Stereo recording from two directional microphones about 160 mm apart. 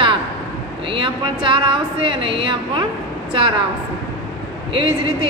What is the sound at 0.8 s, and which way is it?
A woman's voice, 30° right (ahead or behind).